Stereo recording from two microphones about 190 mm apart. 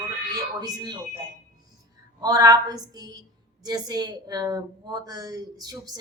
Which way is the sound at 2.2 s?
20° right (ahead or behind).